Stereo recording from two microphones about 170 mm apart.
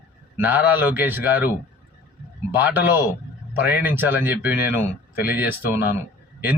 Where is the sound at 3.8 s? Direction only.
10° right (ahead or behind).